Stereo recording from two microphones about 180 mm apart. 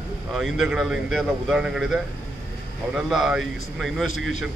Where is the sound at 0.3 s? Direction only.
Centre (ahead or behind).